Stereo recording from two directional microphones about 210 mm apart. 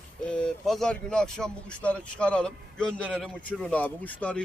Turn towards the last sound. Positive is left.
turn(degrees=5)  # may be behind; listen again after turning